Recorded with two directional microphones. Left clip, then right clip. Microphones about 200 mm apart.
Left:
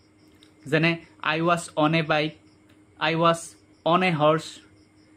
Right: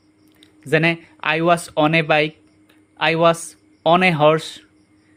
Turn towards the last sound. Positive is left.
turn(degrees=-40)  # may be behind; listen again after turning